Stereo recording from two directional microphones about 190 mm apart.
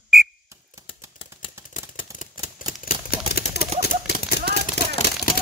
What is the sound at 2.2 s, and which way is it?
Typewriter, 45° left (ahead or behind).